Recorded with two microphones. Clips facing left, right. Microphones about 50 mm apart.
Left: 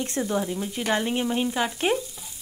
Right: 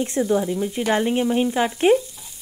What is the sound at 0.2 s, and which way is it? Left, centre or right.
Sizzle, centre.